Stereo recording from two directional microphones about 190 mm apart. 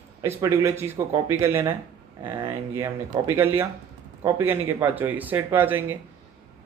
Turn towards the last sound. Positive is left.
turn(degrees=-10)  # may be behind; listen again after turning